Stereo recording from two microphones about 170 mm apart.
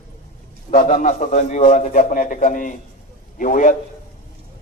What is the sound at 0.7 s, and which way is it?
A man's voice, 50° left (ahead or behind).